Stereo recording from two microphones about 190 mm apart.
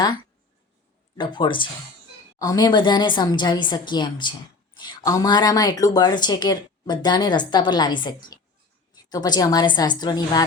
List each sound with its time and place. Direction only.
1.2 s speech: 25° left (ahead or behind)